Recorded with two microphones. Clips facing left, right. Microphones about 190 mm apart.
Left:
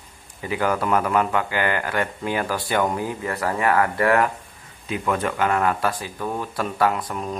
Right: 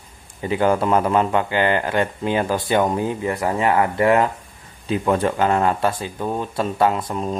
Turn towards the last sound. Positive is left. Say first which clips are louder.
# right 3 dB
turn(degrees=-25)  # may be behind; listen again after turning